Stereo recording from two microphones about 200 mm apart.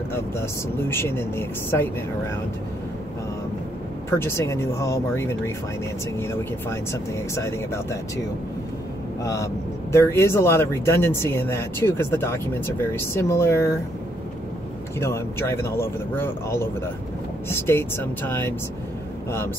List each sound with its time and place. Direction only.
0.1 s speech: 10° left (ahead or behind)
4.1 s speech: 15° left (ahead or behind)
9.2 s speech: 15° left (ahead or behind)
15.0 s speech: 15° left (ahead or behind)